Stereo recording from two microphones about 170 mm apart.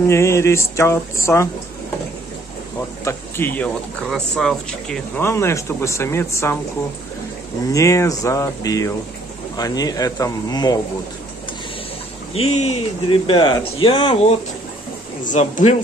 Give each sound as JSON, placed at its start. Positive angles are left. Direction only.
{"t": 0.1, "sound": "speech", "side_deg": 15}
{"t": 3.0, "sound": "speech", "side_deg": 15}
{"t": 5.2, "sound": "speech", "side_deg": 15}
{"t": 7.7, "sound": "speech", "side_deg": 20}
{"t": 12.4, "sound": "speech", "side_deg": 35}
{"t": 15.2, "sound": "speech", "side_deg": 45}